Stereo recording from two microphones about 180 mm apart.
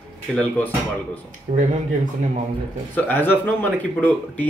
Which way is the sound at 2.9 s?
10° left (ahead or behind).